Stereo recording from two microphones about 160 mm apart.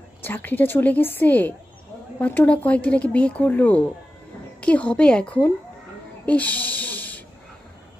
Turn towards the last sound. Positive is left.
turn(degrees=10)  # may be behind; listen again after turning